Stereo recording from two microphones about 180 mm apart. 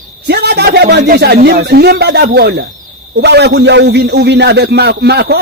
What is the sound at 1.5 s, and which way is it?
A man's voice, 65° right (ahead or behind).